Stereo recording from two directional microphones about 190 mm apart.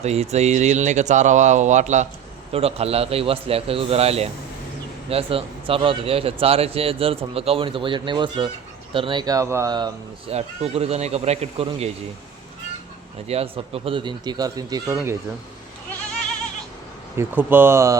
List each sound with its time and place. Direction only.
0.0 s a man's voice: 35° right (ahead or behind)
10.3 s speech: 30° right (ahead or behind)
13.2 s a man's voice: 30° right (ahead or behind)
17.2 s speech: 10° right (ahead or behind)